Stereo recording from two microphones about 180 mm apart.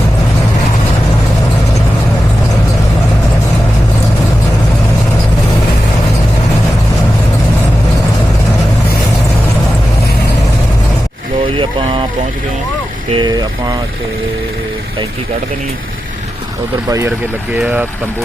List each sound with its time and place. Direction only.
11.5 s a sound: 30° right (ahead or behind)
13.1 s vehicle: 25° right (ahead or behind)
17.5 s speech: 10° right (ahead or behind)